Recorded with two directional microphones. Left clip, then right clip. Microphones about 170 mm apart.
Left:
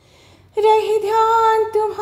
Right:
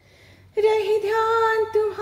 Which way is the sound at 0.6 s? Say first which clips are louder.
Left 5 dB; 20° left (ahead or behind).